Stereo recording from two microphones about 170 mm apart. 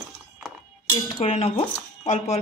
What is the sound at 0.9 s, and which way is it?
A woman's voice, 35° left (ahead or behind).